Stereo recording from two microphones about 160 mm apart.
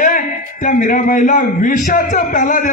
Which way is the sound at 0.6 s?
55° left (ahead or behind).